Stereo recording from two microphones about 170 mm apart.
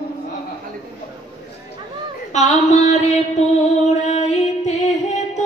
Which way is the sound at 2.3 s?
40° left (ahead or behind).